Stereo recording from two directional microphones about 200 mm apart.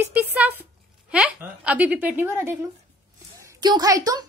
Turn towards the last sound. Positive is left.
turn(degrees=-20)  # may be behind; listen again after turning